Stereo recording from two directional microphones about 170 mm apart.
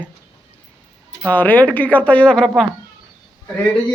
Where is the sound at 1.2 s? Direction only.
10° left (ahead or behind).